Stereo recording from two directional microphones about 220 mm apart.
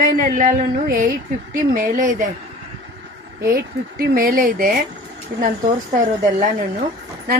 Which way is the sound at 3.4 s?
40° right (ahead or behind).